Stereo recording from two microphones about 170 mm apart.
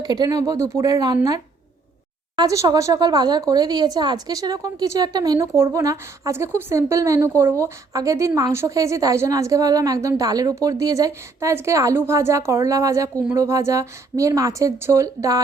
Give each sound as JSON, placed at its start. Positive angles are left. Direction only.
{"t": 0.0, "sound": "speech", "side_deg": -25}